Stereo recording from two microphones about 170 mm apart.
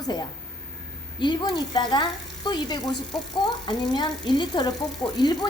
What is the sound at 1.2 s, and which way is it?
A woman's voice, 25° left (ahead or behind).